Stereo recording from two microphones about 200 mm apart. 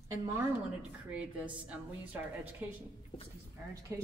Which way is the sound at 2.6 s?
5° right (ahead or behind).